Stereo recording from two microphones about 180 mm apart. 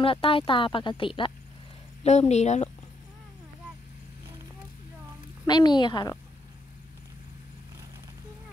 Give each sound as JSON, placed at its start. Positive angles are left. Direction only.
{"t": 0.0, "sound": "speech", "side_deg": 30}
{"t": 5.5, "sound": "speech", "side_deg": 25}